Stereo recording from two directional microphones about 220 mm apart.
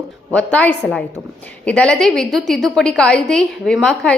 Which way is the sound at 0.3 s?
5° left (ahead or behind).